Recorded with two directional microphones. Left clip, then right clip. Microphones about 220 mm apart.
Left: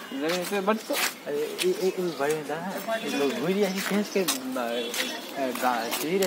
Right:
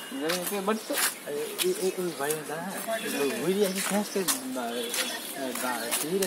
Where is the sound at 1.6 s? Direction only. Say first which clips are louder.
Left 2 dB; 10° right (ahead or behind).